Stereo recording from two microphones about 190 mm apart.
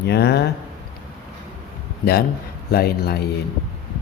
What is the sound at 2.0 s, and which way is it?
A man's voice, 55° left (ahead or behind).